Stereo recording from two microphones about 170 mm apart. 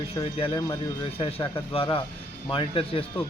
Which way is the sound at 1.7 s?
30° left (ahead or behind).